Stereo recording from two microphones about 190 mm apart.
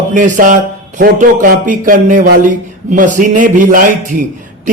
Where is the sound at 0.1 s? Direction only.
45° right (ahead or behind).